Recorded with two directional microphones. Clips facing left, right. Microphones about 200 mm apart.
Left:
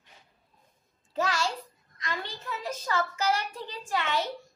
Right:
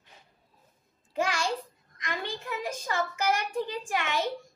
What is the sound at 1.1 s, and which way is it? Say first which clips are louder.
A child's voice: even; 15° right (ahead or behind).